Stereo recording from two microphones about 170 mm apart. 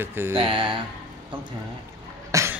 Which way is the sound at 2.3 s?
15° right (ahead or behind).